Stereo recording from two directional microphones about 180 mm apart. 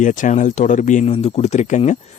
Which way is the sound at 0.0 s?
45° left (ahead or behind).